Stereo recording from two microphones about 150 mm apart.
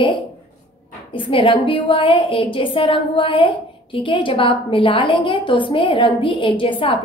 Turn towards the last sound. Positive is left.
turn(degrees=35)  # may be behind; listen again after turning